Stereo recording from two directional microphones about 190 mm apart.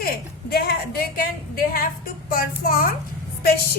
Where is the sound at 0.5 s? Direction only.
55° left (ahead or behind).